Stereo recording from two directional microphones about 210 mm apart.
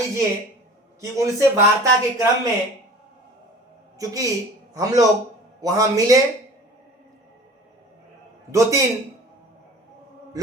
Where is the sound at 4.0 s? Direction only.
15° right (ahead or behind).